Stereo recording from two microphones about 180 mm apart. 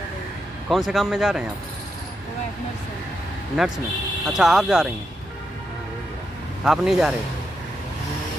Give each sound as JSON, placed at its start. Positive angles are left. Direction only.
{"t": 0.7, "sound": "a man's voice", "side_deg": 0}
{"t": 3.5, "sound": "a man's voice", "side_deg": -5}
{"t": 6.6, "sound": "a man's voice", "side_deg": -5}